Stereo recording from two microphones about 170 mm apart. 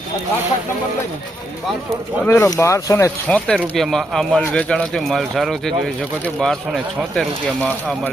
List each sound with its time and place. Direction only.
2.2 s speech: 15° left (ahead or behind)